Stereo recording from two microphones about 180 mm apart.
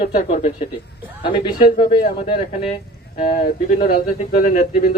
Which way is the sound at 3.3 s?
50° left (ahead or behind).